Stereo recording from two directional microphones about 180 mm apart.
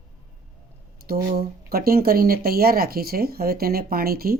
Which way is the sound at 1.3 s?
60° right (ahead or behind).